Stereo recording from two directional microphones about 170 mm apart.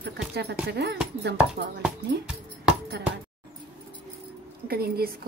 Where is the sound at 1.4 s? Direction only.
5° right (ahead or behind).